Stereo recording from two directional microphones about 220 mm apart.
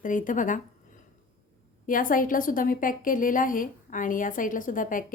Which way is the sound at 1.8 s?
40° left (ahead or behind).